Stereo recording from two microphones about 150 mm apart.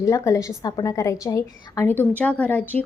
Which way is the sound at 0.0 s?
20° left (ahead or behind).